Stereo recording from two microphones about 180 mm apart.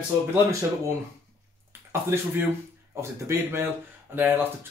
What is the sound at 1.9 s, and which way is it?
Speech, 15° right (ahead or behind).